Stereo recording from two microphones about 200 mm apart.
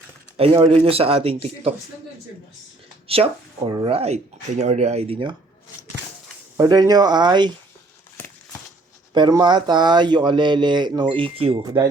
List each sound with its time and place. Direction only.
0.3 s speech: 30° right (ahead or behind)
3.1 s speech: 30° right (ahead or behind)
6.6 s speech: 20° right (ahead or behind)
9.1 s speech: 20° right (ahead or behind)